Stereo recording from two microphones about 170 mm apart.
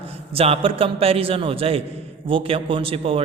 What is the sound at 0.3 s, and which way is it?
A man's voice, 35° right (ahead or behind).